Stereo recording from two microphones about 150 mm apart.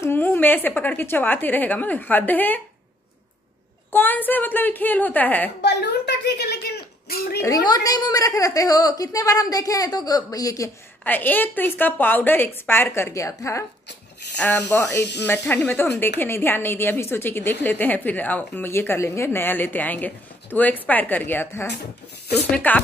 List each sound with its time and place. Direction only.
0.0 s a woman's voice: 15° left (ahead or behind)
3.9 s a woman's voice: 15° left (ahead or behind)
5.6 s speech: 90° left
7.3 s speech: 20° left (ahead or behind)
11.1 s a woman's voice: 10° left (ahead or behind)